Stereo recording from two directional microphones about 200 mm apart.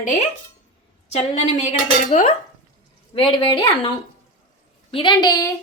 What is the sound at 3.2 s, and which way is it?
A woman's voice, 25° left (ahead or behind).